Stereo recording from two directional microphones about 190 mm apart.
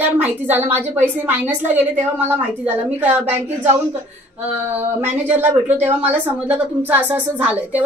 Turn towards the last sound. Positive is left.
turn(degrees=-5)  # may be behind; listen again after turning